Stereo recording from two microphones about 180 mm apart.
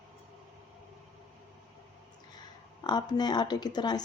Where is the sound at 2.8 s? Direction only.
25° left (ahead or behind).